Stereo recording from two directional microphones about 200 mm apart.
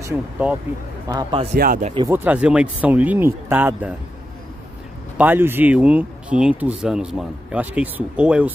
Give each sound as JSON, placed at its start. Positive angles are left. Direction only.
{"t": 0.0, "sound": "speech", "side_deg": -10}
{"t": 1.6, "sound": "speech", "side_deg": -40}
{"t": 2.0, "sound": "speech", "side_deg": -10}
{"t": 5.1, "sound": "speech", "side_deg": -10}